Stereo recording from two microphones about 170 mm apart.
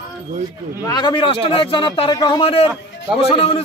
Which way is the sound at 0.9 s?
25° left (ahead or behind).